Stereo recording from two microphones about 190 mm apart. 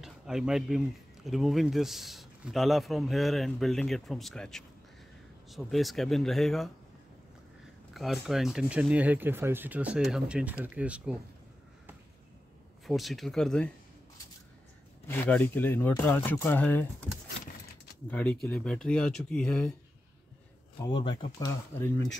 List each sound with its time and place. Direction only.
0.0 s speech: centre (ahead or behind)
7.9 s speech: centre (ahead or behind)
12.8 s speech: centre (ahead or behind)
15.0 s speech: 10° left (ahead or behind)
18.1 s speech: 5° left (ahead or behind)
20.8 s speech: 25° left (ahead or behind)
21.5 s speech: 15° left (ahead or behind)